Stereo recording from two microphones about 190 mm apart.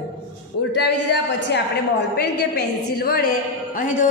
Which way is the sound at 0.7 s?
65° left (ahead or behind).